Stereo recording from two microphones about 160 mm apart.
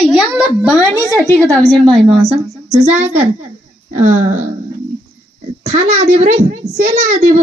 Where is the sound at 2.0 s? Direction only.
35° right (ahead or behind).